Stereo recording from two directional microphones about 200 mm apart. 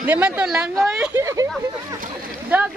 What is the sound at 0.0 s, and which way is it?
Speech, 5° right (ahead or behind).